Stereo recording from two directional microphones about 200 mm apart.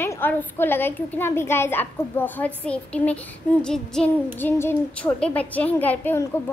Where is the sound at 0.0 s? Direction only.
10° left (ahead or behind).